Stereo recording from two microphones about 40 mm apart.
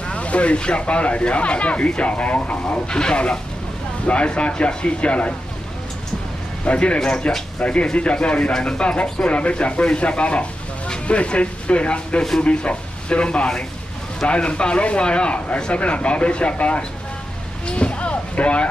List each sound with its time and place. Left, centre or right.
0.1 s speech: left
6.6 s speech: left
12.2 s speech: centre
12.4 s speech: left
17.6 s a sound: left